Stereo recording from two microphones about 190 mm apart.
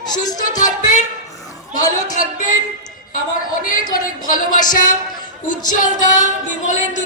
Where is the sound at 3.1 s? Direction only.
45° left (ahead or behind).